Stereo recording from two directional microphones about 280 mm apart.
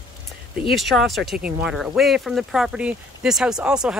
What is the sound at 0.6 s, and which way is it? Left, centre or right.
Speech, centre.